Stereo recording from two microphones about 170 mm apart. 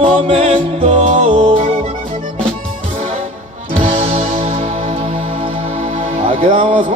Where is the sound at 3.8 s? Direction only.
35° right (ahead or behind).